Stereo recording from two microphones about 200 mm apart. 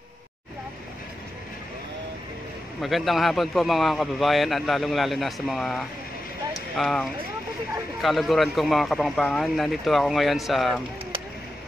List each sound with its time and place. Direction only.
2.8 s a man's voice: centre (ahead or behind)